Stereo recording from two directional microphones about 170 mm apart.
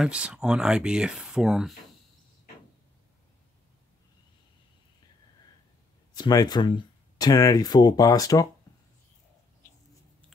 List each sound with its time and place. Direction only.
0.0 s speech: 5° right (ahead or behind)
6.1 s speech: 25° left (ahead or behind)